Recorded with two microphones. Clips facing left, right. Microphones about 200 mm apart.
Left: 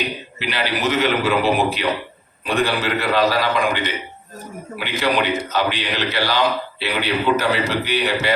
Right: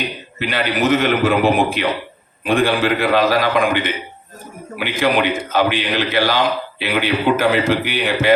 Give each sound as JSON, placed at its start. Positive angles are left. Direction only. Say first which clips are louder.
{"t": 0.3, "sound": "a man's voice", "louder": "right 5 dB", "side_deg": -50}